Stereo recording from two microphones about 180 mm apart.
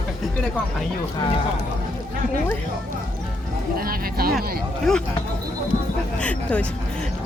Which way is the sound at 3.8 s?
55° right (ahead or behind).